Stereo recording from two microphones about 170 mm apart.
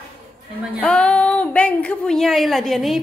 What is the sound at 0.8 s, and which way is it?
A woman's voice, 5° left (ahead or behind).